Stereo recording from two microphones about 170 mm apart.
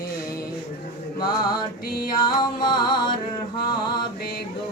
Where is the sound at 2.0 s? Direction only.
25° left (ahead or behind).